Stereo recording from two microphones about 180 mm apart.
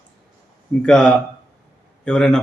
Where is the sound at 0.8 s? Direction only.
5° left (ahead or behind).